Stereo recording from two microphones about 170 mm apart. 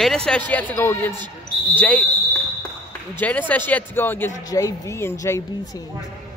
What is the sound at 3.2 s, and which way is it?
Speech, 10° left (ahead or behind).